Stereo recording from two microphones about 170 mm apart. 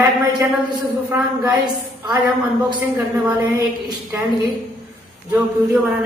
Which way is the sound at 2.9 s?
20° right (ahead or behind).